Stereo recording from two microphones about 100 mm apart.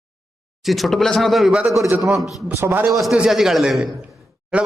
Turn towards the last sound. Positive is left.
turn(degrees=-10)  # may be behind; listen again after turning